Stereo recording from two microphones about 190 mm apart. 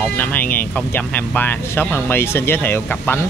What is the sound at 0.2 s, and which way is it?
Speech, 10° left (ahead or behind).